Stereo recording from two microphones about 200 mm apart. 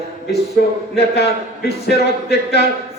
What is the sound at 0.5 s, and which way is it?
A man's voice, 55° left (ahead or behind).